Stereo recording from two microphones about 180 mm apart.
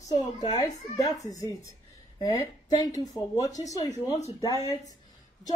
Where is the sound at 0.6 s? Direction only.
20° left (ahead or behind).